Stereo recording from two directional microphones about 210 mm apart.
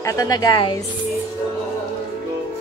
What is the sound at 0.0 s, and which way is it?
Speech, 15° left (ahead or behind).